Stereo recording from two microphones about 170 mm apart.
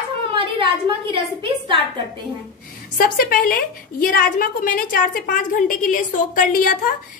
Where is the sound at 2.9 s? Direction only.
55° left (ahead or behind).